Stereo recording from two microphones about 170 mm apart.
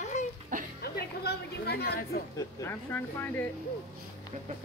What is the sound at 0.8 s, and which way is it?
Speech, 70° left (ahead or behind).